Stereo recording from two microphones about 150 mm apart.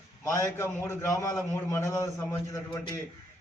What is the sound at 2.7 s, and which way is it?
Speech, 30° left (ahead or behind).